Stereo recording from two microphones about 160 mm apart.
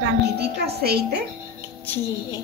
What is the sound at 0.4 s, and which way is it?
Speech, 85° right.